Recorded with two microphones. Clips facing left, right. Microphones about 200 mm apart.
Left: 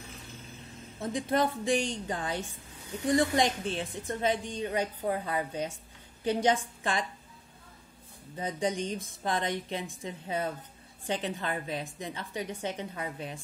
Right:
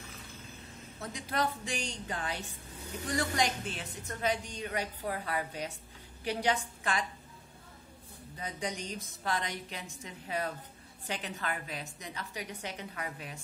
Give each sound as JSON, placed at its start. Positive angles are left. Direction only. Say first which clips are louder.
{"t": 0.9, "sound": "a woman's voice", "louder": "left 7 dB", "side_deg": 25}
{"t": 3.3, "sound": "a woman's voice", "louder": "left 5 dB", "side_deg": 25}
{"t": 8.4, "sound": "a woman's voice", "louder": "left 7 dB", "side_deg": 30}